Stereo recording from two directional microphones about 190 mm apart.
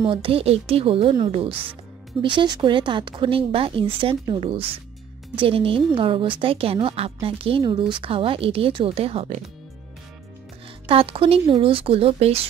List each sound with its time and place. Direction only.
0.0 s speech: 30° right (ahead or behind)
10.9 s speech: 30° right (ahead or behind)